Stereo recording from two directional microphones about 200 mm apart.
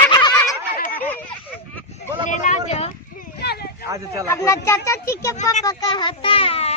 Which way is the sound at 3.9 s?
15° right (ahead or behind).